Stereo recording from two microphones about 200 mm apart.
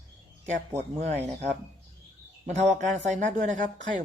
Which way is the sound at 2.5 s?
35° right (ahead or behind).